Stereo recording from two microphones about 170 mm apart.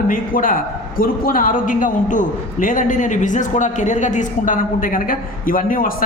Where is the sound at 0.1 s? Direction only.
55° left (ahead or behind).